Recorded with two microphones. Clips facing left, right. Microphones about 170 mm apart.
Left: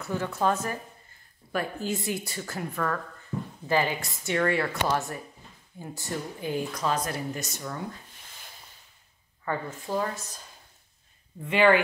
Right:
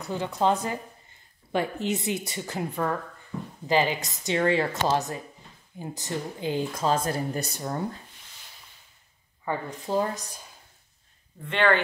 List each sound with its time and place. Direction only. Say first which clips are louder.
0.0 s speech: right 2 dB; 15° right (ahead or behind); by 7.8 s 35° right (ahead or behind)
9.4 s speech: right 1 dB; 15° right (ahead or behind)
11.4 s speech: left 2 dB; 5° left (ahead or behind)